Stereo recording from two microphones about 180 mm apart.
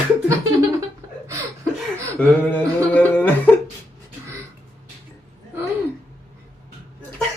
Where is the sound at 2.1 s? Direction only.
10° left (ahead or behind).